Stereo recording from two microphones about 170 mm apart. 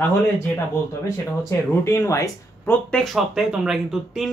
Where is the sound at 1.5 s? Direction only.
15° left (ahead or behind).